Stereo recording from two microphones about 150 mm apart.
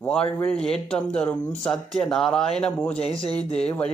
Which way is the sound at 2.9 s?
40° left (ahead or behind).